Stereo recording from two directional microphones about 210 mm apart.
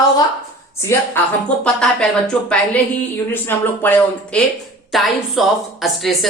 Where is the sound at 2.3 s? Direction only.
5° left (ahead or behind).